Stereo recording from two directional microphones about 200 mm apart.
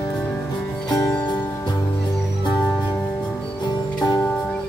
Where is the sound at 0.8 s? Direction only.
20° left (ahead or behind).